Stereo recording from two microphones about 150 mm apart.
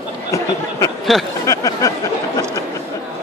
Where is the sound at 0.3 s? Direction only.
20° left (ahead or behind).